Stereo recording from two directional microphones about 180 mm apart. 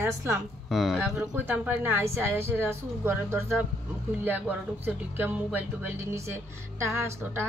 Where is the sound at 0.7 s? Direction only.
Centre (ahead or behind).